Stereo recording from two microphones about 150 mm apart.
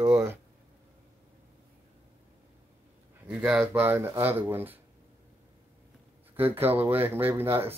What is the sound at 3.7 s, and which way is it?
Speech, 15° right (ahead or behind).